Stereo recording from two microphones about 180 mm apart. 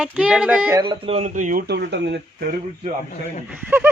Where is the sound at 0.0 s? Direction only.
5° right (ahead or behind).